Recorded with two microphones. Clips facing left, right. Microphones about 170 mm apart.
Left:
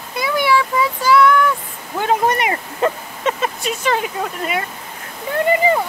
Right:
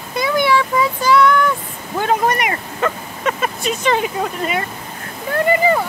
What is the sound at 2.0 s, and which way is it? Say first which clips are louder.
Speech: even; 20° left (ahead or behind).